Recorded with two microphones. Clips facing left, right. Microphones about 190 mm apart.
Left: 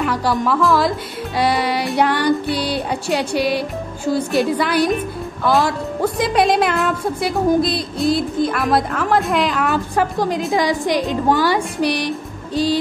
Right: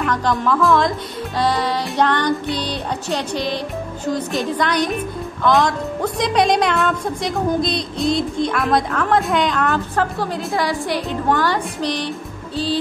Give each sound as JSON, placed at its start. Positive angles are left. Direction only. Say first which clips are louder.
{"t": 0.0, "sound": "a woman's voice", "louder": "left 1 dB", "side_deg": 10}
{"t": 9.7, "sound": "a woman's voice", "louder": "left 1 dB", "side_deg": 15}